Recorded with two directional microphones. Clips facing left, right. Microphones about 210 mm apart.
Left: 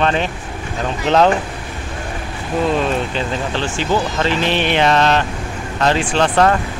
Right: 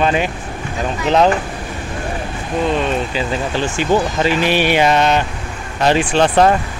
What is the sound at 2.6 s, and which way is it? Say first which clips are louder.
Speech: even; centre (ahead or behind).